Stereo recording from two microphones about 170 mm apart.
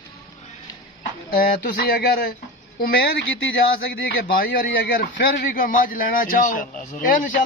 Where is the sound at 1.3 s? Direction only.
60° left (ahead or behind).